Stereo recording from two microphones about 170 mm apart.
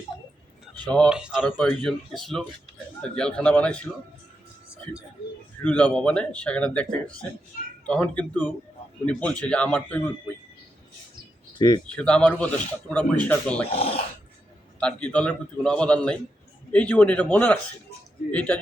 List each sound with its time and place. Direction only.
0.9 s speech: 5° left (ahead or behind)
1.1 s a man's voice: 5° right (ahead or behind)
5.6 s speech: 5° left (ahead or behind)
11.5 s speech: 25° left (ahead or behind)
11.9 s speech: 5° left (ahead or behind)
13.7 s speech: 35° left (ahead or behind)
14.8 s a man's voice: 5° left (ahead or behind)